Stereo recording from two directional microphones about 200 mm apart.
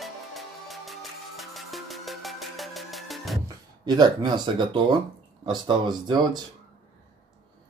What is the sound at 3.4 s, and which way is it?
Speech, 20° right (ahead or behind).